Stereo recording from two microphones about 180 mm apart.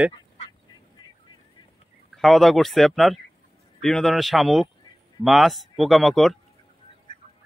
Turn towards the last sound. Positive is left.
turn(degrees=0)  # may be behind; listen again after turning